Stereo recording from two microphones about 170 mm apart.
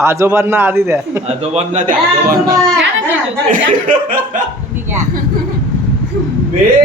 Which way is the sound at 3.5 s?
55° right (ahead or behind).